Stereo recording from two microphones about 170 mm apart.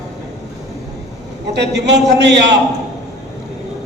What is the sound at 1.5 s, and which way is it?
A man's voice, 90° right.